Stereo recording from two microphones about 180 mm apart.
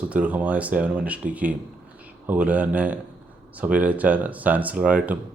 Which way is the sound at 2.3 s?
10° right (ahead or behind).